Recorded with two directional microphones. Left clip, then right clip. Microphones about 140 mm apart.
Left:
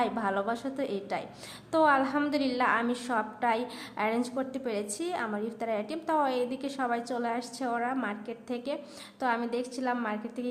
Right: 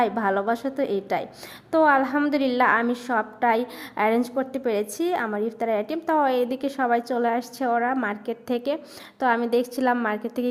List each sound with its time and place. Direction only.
0.0 s a woman's voice: 40° right (ahead or behind)